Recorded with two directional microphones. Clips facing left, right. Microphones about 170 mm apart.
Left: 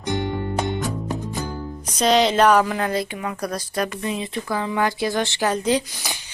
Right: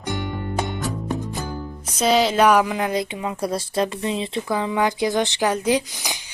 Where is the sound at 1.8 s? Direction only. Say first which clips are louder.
Left 1 dB; 5° right (ahead or behind).